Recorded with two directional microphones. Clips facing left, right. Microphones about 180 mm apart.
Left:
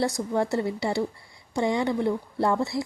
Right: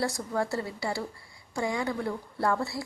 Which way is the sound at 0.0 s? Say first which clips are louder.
Left 4 dB; 20° left (ahead or behind).